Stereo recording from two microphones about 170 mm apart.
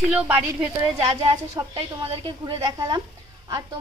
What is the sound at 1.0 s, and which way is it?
A woman's voice, 35° right (ahead or behind).